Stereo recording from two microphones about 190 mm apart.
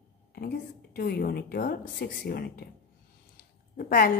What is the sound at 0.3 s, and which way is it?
A woman's voice, 55° left (ahead or behind).